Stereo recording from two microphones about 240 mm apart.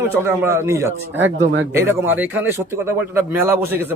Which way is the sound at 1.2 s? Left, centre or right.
Right.